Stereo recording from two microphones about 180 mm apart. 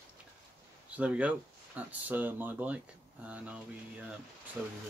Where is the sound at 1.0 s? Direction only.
5° right (ahead or behind).